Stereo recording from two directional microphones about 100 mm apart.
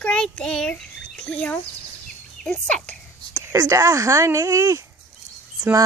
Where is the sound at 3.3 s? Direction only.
30° right (ahead or behind).